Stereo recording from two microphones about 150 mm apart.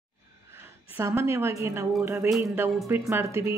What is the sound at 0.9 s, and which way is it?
Speech, 15° right (ahead or behind).